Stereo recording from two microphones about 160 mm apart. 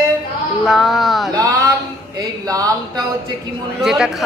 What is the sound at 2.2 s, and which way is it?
Speech, 25° right (ahead or behind).